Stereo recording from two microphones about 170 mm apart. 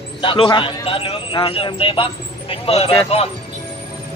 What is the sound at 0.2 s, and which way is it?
A man's voice, 30° left (ahead or behind).